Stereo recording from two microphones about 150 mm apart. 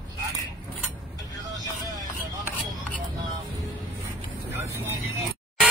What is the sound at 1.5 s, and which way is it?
Music, 25° right (ahead or behind).